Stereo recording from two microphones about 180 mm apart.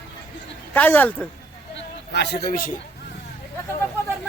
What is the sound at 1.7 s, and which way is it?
A man's voice, 70° left (ahead or behind).